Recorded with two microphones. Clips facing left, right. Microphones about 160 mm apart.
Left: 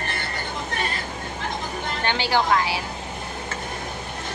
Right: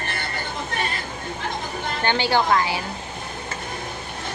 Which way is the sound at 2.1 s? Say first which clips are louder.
Right 2 dB; centre (ahead or behind).